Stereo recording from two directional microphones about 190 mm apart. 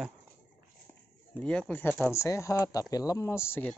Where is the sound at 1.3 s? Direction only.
5° left (ahead or behind).